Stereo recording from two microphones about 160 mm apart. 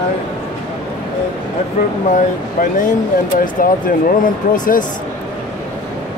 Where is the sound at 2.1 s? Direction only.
55° left (ahead or behind).